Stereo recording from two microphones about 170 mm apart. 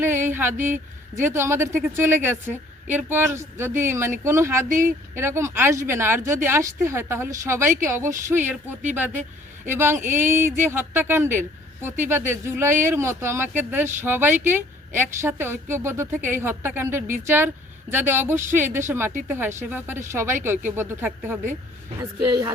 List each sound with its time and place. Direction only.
0.0 s a sound: 15° right (ahead or behind)
0.5 s a woman's voice: 50° right (ahead or behind)
1.1 s speech: 15° right (ahead or behind)